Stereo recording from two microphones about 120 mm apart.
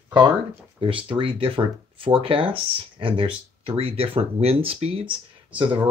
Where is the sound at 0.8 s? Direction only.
45° right (ahead or behind).